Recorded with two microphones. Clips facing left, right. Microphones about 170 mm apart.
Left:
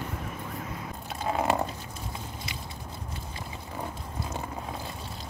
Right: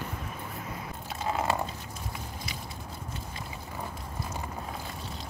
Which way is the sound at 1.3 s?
20° left (ahead or behind).